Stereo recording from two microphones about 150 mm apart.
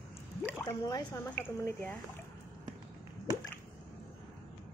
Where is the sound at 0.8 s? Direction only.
25° left (ahead or behind).